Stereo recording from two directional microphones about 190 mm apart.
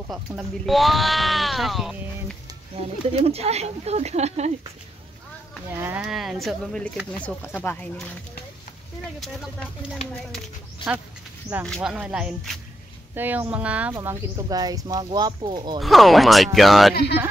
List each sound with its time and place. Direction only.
0.1 s speech: centre (ahead or behind)
3.2 s speech: 35° right (ahead or behind)
5.8 s speech: 10° right (ahead or behind); by 7.9 s 10° left (ahead or behind)
9.9 s speech: 5° left (ahead or behind)
13.9 s speech: 20° right (ahead or behind)
15.8 s speech: centre (ahead or behind)